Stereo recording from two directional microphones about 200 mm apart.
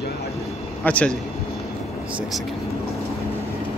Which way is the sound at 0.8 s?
5° left (ahead or behind).